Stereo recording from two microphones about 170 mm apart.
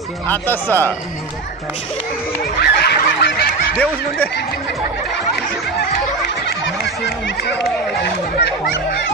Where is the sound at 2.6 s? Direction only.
75° left (ahead or behind).